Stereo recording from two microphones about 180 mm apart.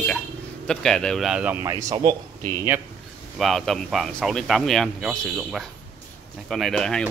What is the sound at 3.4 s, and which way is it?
Speech, centre (ahead or behind).